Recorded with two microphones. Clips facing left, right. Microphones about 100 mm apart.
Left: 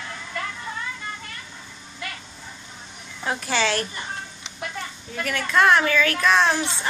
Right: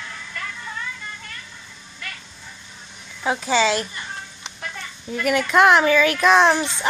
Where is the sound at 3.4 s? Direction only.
15° right (ahead or behind).